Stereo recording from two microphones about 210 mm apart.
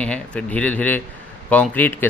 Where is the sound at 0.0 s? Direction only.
5° left (ahead or behind).